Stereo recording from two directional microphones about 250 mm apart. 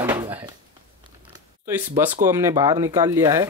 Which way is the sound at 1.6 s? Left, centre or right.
Centre.